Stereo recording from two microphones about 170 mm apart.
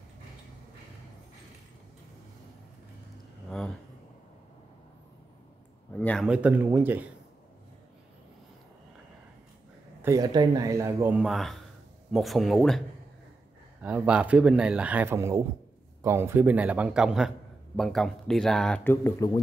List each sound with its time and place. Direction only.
3.4 s a sound: 5° left (ahead or behind)
5.9 s speech: 5° left (ahead or behind)
6.2 s speech: 5° right (ahead or behind)
10.0 s speech: 20° right (ahead or behind); by 12.8 s centre (ahead or behind)
13.8 s speech: 10° right (ahead or behind)
19.0 s speech: 20° left (ahead or behind)